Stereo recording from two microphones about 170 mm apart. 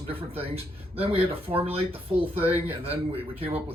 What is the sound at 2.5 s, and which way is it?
Speech, 10° right (ahead or behind).